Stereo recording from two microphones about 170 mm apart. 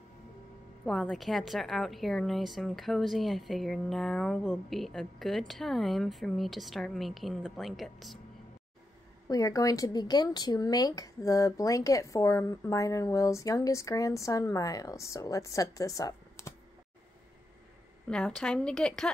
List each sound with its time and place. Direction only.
0.8 s a woman's voice: 5° left (ahead or behind)
9.3 s speech: 20° left (ahead or behind)
18.0 s a woman's voice: 5° left (ahead or behind)